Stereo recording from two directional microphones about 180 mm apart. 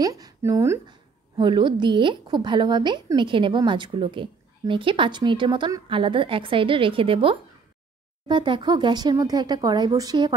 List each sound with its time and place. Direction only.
0.0 s a woman's voice: 20° right (ahead or behind)